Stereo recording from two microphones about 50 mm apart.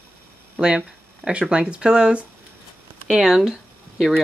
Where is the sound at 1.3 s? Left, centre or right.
Centre.